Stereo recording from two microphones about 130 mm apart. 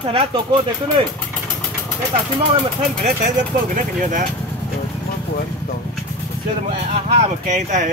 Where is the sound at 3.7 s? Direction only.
90° right.